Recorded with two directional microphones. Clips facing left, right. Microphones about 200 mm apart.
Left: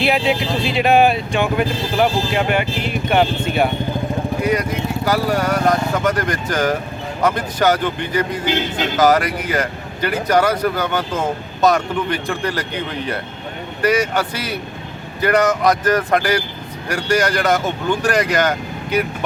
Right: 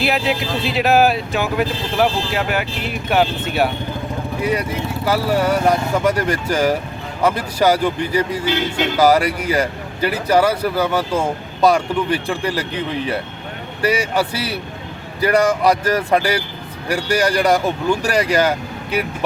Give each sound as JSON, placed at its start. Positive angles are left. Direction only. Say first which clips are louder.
{"t": 0.0, "sound": "speech", "louder": "left 2 dB", "side_deg": 0}
{"t": 5.0, "sound": "speech", "louder": "right 2 dB", "side_deg": -5}
{"t": 13.8, "sound": "speech", "louder": "left 1 dB", "side_deg": -10}